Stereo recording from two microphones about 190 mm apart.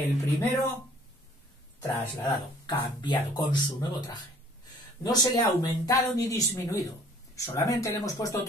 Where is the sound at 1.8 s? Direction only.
15° left (ahead or behind).